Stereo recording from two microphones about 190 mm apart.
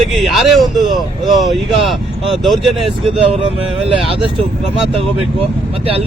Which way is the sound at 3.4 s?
30° right (ahead or behind).